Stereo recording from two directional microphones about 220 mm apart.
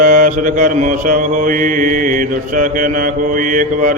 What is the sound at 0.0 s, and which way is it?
Mantra, 35° right (ahead or behind).